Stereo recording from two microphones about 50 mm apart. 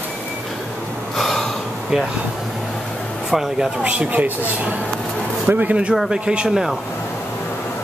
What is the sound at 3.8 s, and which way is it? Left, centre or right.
Speech, right.